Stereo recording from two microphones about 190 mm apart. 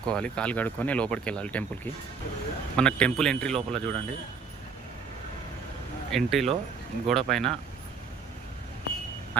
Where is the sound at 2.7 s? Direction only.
5° left (ahead or behind).